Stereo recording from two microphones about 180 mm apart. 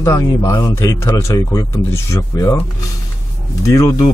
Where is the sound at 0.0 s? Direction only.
15° left (ahead or behind).